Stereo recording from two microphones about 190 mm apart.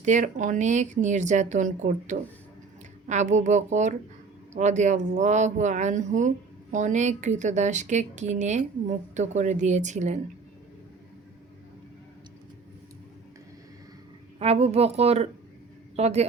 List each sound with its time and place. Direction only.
0.0 s speech: 40° right (ahead or behind)
14.3 s speech: 30° right (ahead or behind)